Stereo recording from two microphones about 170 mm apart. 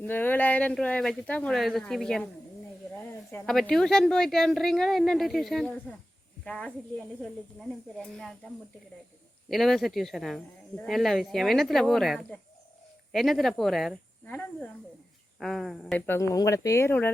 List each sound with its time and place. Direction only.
0.0 s speech: 10° left (ahead or behind)
3.4 s speech: 5° left (ahead or behind)
9.5 s speech: centre (ahead or behind)
16.0 s speech: 15° left (ahead or behind)